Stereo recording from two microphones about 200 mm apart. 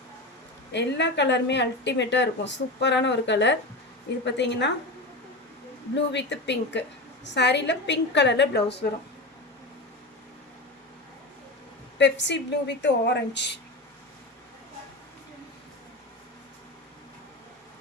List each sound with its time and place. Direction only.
0.7 s a woman's voice: 60° left (ahead or behind)
5.9 s a woman's voice: 60° left (ahead or behind)
11.9 s a woman's voice: 60° left (ahead or behind)